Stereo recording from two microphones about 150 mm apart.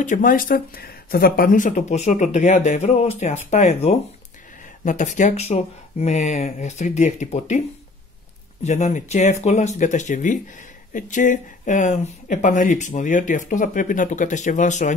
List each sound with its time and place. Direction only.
0.0 s speech: 60° left (ahead or behind)
8.6 s speech: 50° left (ahead or behind)